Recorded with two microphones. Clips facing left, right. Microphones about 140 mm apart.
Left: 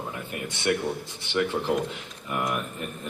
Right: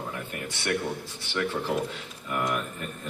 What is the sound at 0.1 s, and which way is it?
A man's voice, 20° left (ahead or behind).